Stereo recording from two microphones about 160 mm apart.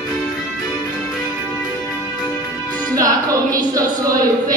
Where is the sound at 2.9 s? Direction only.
20° right (ahead or behind).